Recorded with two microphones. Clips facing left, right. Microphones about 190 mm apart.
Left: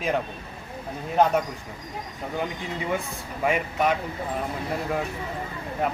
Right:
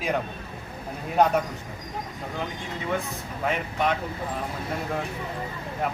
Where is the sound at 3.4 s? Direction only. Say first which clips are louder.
Left 3 dB; 10° left (ahead or behind).